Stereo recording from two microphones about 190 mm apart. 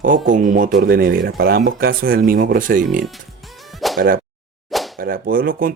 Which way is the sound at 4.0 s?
50° right (ahead or behind).